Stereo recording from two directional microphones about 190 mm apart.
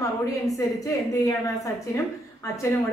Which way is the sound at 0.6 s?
15° left (ahead or behind).